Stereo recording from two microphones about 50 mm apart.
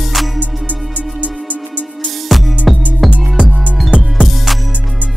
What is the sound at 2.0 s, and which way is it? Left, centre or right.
Music, centre.